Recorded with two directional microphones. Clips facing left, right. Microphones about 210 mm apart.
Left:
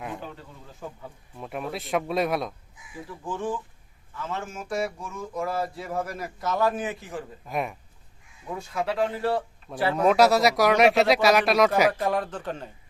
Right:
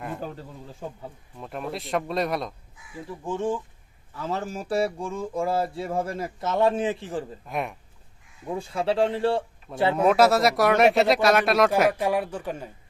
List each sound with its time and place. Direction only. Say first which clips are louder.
0.8 s speech: right 2 dB; 30° right (ahead or behind)
1.4 s speech: even; 5° left (ahead or behind)
3.1 s speech: right 3 dB; 25° right (ahead or behind)
7.4 s speech: left 1 dB; centre (ahead or behind)
8.5 s speech: right 3 dB; 30° right (ahead or behind)
9.9 s speech: even; 5° right (ahead or behind)
11.9 s speech: right 1 dB; 10° right (ahead or behind)